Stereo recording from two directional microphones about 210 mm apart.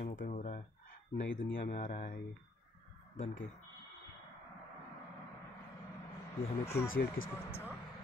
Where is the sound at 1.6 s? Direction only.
40° left (ahead or behind).